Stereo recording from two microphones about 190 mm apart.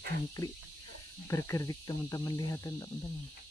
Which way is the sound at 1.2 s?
15° left (ahead or behind).